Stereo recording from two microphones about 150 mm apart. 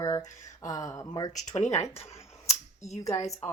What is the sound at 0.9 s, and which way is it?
Speech, 25° left (ahead or behind).